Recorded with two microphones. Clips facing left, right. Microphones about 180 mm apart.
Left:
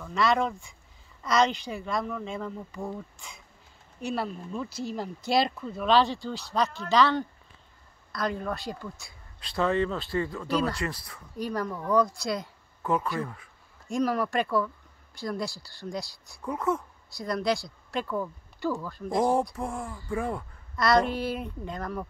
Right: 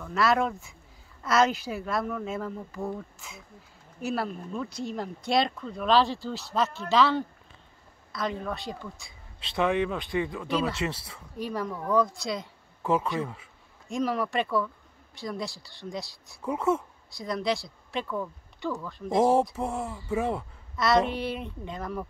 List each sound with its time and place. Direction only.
0.0 s speech: 5° right (ahead or behind)
9.4 s speech: 15° right (ahead or behind)
10.5 s speech: centre (ahead or behind)
10.8 s speech: 25° right (ahead or behind)
11.3 s speech: centre (ahead or behind)
19.1 s speech: 25° right (ahead or behind)
20.7 s speech: centre (ahead or behind)